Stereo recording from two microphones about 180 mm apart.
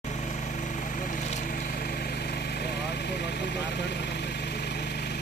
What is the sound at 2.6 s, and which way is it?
Vehicle, 65° left (ahead or behind).